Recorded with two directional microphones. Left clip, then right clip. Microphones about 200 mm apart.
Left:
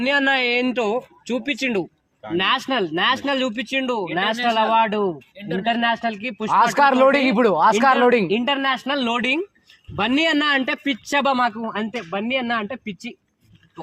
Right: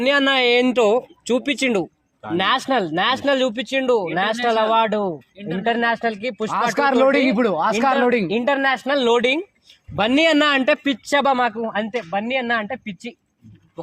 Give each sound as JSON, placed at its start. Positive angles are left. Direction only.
{"t": 0.0, "sound": "speech", "side_deg": -45}
{"t": 5.4, "sound": "speech", "side_deg": 35}
{"t": 5.6, "sound": "speech", "side_deg": -35}
{"t": 6.7, "sound": "speech", "side_deg": 10}
{"t": 8.3, "sound": "speech", "side_deg": -35}
{"t": 11.0, "sound": "speech", "side_deg": -35}